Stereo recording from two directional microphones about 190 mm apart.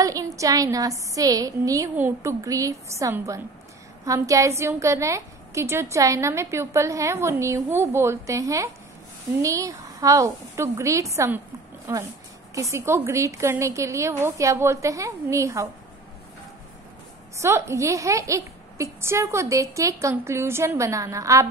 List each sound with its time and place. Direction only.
0.0 s a sound: 20° right (ahead or behind)
0.4 s a woman's voice: 15° right (ahead or behind)
17.4 s a woman's voice: 15° right (ahead or behind)